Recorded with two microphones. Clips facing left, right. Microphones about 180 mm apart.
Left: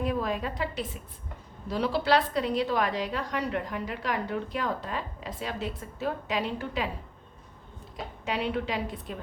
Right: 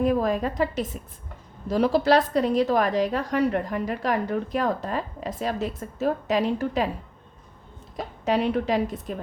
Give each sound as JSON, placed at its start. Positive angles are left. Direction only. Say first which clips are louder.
{"t": 0.0, "sound": "a woman's voice", "louder": "right 7 dB", "side_deg": -45}
{"t": 7.9, "sound": "a woman's voice", "louder": "right 8 dB", "side_deg": -40}